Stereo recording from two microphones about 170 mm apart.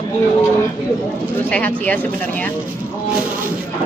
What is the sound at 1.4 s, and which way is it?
Speech, 10° left (ahead or behind).